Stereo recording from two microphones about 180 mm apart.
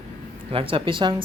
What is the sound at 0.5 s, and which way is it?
Speech, 30° right (ahead or behind).